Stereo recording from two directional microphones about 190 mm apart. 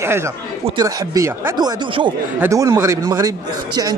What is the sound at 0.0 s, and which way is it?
Speech, 15° right (ahead or behind).